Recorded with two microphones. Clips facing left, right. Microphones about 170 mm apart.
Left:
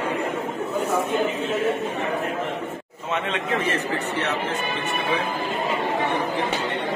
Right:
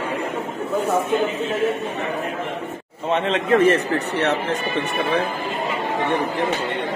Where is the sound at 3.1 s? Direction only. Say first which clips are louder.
Right 7 dB; 40° right (ahead or behind).